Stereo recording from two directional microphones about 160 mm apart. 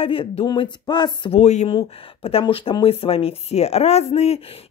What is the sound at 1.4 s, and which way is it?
Speech, 45° left (ahead or behind).